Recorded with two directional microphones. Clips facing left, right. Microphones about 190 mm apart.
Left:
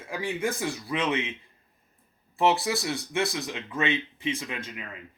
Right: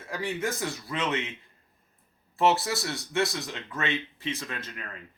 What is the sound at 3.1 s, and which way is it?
Speech, 15° left (ahead or behind).